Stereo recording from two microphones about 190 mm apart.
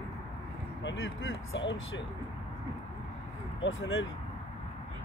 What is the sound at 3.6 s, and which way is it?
Speech, 90° left.